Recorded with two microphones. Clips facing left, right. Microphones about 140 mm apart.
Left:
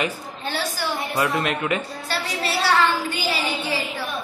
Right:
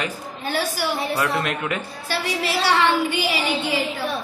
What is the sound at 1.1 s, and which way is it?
Speech, 5° left (ahead or behind).